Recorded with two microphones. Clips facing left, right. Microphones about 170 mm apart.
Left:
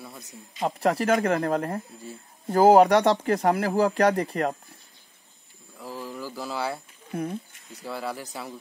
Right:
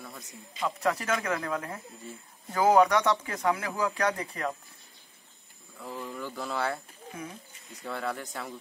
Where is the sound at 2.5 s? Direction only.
30° left (ahead or behind).